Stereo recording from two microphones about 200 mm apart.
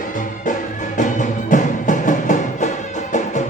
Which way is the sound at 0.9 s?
40° left (ahead or behind).